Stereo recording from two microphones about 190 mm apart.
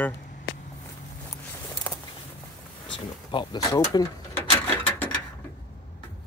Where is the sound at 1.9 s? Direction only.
10° left (ahead or behind).